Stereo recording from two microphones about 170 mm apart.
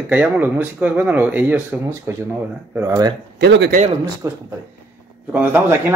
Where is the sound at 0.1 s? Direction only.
10° right (ahead or behind).